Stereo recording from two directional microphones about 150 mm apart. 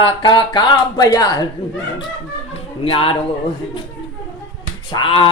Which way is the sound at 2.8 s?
40° left (ahead or behind).